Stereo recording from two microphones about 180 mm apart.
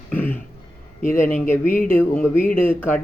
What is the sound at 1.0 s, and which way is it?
Speech, 45° left (ahead or behind).